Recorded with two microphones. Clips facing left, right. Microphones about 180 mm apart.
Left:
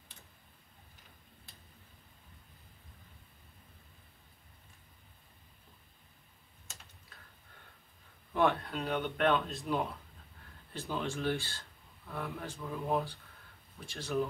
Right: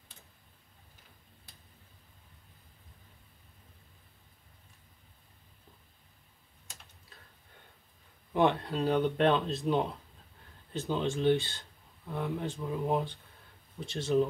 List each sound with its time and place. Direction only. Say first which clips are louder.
8.3 s speech: right 3 dB; 20° right (ahead or behind)
8.6 s speech: right 7 dB; 30° right (ahead or behind)